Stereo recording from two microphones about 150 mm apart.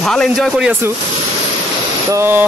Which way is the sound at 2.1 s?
15° right (ahead or behind).